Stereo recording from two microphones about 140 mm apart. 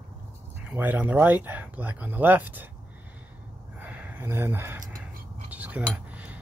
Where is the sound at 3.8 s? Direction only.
10° right (ahead or behind).